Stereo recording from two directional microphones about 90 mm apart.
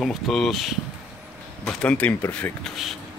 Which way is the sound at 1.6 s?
15° left (ahead or behind).